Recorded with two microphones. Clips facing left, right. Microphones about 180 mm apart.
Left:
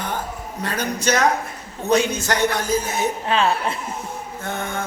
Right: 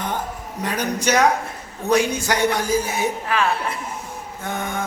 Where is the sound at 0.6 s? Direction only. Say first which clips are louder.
Right 1 dB; 15° right (ahead or behind).